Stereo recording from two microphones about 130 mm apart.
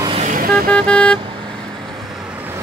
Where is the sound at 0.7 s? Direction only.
10° left (ahead or behind).